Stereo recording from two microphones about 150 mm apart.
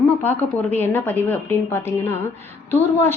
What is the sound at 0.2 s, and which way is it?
A woman's voice, 10° left (ahead or behind).